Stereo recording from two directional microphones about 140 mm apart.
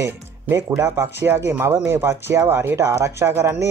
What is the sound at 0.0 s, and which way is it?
Speech, 20° right (ahead or behind).